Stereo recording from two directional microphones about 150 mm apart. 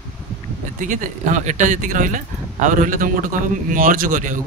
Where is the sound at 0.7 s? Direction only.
60° right (ahead or behind).